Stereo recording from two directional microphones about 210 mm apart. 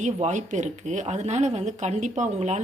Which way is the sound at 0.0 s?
35° right (ahead or behind).